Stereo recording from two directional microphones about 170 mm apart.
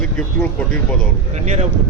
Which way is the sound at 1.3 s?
40° right (ahead or behind).